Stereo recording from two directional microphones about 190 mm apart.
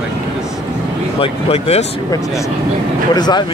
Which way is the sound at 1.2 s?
35° left (ahead or behind).